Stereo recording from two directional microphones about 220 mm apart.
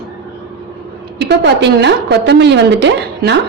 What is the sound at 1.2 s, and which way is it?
A woman's voice, 50° right (ahead or behind).